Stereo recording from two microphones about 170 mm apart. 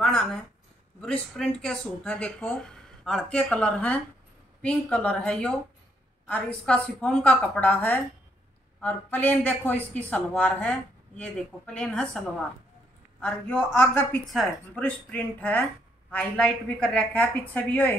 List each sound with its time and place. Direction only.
0.0 s a sound: 5° left (ahead or behind)
1.0 s speech: 5° left (ahead or behind)
13.2 s speech: 5° left (ahead or behind)